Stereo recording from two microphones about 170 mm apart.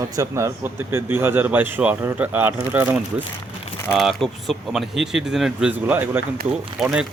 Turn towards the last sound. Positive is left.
turn(degrees=-5)  # may be behind; listen again after turning